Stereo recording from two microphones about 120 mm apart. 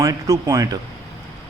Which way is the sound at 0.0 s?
30° right (ahead or behind).